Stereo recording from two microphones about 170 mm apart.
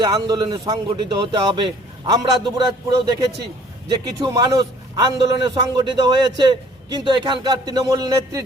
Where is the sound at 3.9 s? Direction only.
25° right (ahead or behind).